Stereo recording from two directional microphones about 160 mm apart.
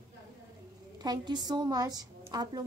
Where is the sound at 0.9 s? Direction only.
25° right (ahead or behind).